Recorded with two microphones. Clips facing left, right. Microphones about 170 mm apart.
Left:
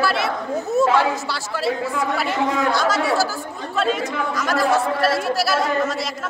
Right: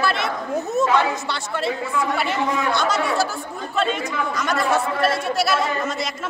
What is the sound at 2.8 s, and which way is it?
Speech, 5° left (ahead or behind).